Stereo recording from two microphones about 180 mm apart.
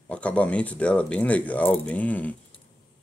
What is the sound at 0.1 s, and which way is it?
Speech, 5° left (ahead or behind).